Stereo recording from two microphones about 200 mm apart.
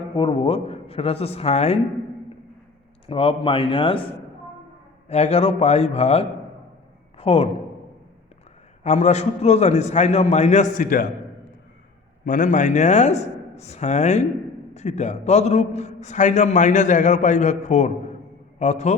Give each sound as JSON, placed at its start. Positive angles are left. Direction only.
{"t": 0.2, "sound": "a man's voice", "side_deg": 25}
{"t": 3.1, "sound": "a man's voice", "side_deg": 25}
{"t": 5.0, "sound": "a man's voice", "side_deg": 35}
{"t": 8.8, "sound": "a man's voice", "side_deg": 35}
{"t": 12.2, "sound": "a man's voice", "side_deg": 40}